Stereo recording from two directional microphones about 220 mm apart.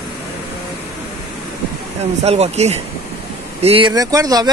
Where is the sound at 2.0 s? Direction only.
30° right (ahead or behind).